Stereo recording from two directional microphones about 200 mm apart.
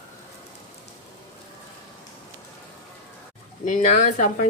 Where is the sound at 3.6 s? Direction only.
40° left (ahead or behind).